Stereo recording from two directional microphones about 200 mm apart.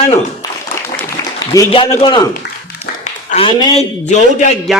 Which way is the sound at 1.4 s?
15° left (ahead or behind).